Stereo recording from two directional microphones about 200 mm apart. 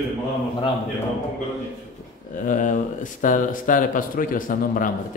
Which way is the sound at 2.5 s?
40° left (ahead or behind).